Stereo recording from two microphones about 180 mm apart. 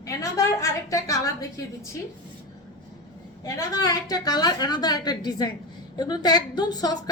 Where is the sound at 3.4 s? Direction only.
20° left (ahead or behind).